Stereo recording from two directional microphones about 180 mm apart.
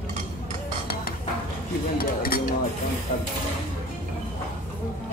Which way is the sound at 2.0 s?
55° left (ahead or behind).